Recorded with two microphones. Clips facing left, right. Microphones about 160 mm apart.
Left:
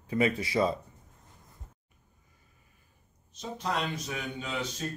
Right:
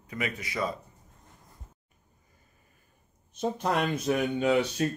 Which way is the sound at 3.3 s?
55° right (ahead or behind).